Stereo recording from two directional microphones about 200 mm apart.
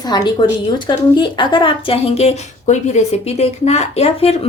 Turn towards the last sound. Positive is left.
turn(degrees=30)  # may be behind; listen again after turning